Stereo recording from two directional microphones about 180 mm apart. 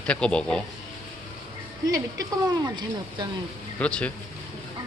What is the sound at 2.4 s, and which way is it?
Speech, 20° right (ahead or behind).